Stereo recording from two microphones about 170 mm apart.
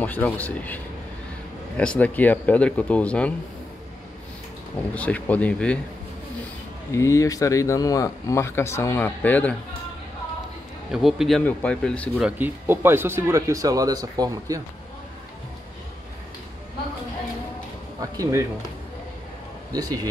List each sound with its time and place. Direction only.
0.0 s speech: 10° left (ahead or behind)
1.8 s speech: 5° left (ahead or behind)
4.9 s speech: 10° left (ahead or behind)
6.9 s speech: 15° left (ahead or behind)
10.9 s speech: centre (ahead or behind)
12.2 s speech: 10° right (ahead or behind)
18.1 s speech: 20° right (ahead or behind)
19.7 s speech: 20° right (ahead or behind)